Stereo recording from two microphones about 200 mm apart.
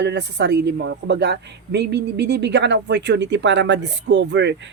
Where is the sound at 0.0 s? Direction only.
60° right (ahead or behind).